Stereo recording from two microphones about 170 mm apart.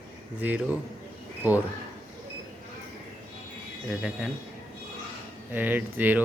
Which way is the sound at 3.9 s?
5° right (ahead or behind).